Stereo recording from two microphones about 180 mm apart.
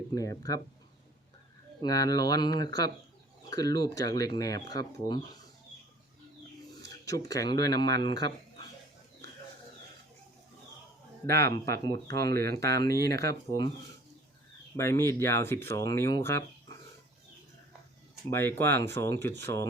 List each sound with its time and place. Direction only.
0.1 s speech: 20° left (ahead or behind)
1.8 s speech: 20° left (ahead or behind)
6.8 s speech: 20° left (ahead or behind)
11.3 s speech: 60° right (ahead or behind)
12.5 s speech: 20° left (ahead or behind)
14.8 s speech: 15° left (ahead or behind)
18.3 s speech: 15° left (ahead or behind)